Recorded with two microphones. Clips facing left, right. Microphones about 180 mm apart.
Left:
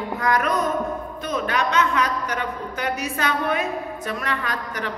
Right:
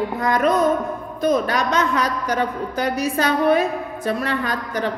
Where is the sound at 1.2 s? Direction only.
40° right (ahead or behind).